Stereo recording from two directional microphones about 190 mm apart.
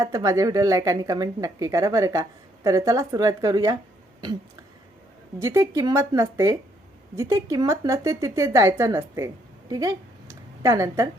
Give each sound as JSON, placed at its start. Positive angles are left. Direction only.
{"t": 0.0, "sound": "speech", "side_deg": -15}
{"t": 5.4, "sound": "speech", "side_deg": -15}